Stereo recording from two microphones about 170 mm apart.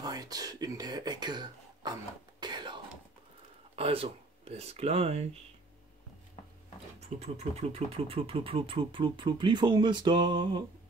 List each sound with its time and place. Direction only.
0.0 s speech: 25° right (ahead or behind)
2.4 s a sound: 25° right (ahead or behind)
3.7 s speech: 35° right (ahead or behind)
7.0 s speech: 40° right (ahead or behind)